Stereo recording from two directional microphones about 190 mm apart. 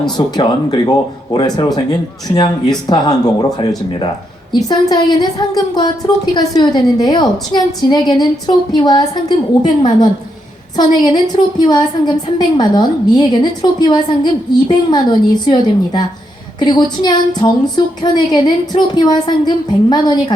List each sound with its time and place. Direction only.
0.2 s a woman's voice: 20° left (ahead or behind)
4.7 s a woman's voice: 20° left (ahead or behind)